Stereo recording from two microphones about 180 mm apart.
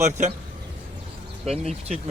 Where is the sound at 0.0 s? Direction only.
40° right (ahead or behind).